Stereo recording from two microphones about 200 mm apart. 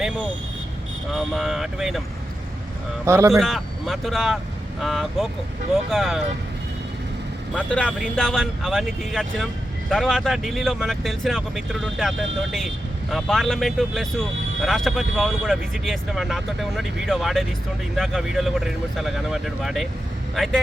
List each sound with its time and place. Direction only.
1.1 s speech: centre (ahead or behind)
3.1 s a man's voice: 15° right (ahead or behind)
3.3 s speech: centre (ahead or behind)
7.5 s speech: 5° left (ahead or behind)